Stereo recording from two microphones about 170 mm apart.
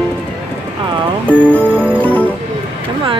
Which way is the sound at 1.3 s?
5° left (ahead or behind).